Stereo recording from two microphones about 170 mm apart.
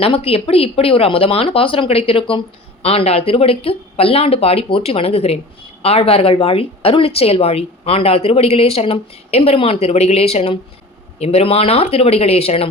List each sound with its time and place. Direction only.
0.0 s speech: 35° left (ahead or behind)